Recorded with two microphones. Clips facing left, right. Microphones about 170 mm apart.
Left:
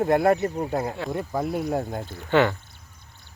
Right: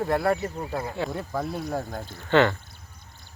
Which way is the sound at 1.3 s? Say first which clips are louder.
Left 6 dB; 20° left (ahead or behind).